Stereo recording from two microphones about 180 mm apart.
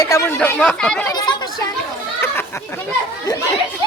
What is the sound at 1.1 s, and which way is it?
Chatter, 25° left (ahead or behind).